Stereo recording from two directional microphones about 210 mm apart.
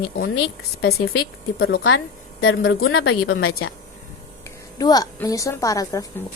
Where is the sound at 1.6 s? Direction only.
55° left (ahead or behind); by 3.5 s 80° left.